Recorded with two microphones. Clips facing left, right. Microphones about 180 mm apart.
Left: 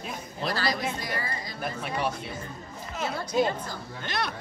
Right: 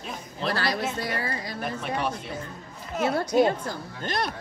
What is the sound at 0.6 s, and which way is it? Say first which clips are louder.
Speech: right 1 dB; 65° right (ahead or behind).